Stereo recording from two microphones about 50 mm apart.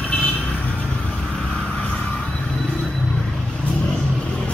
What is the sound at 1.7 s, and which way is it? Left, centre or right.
Vehicle, left.